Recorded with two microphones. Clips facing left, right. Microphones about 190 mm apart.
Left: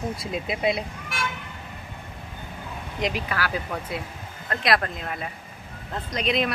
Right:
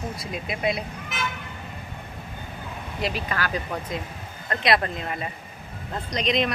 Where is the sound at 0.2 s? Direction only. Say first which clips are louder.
Left 1 dB; 25° left (ahead or behind).